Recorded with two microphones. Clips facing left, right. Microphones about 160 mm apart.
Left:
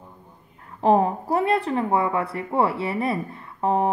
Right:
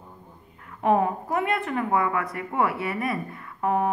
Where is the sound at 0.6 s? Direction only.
30° left (ahead or behind).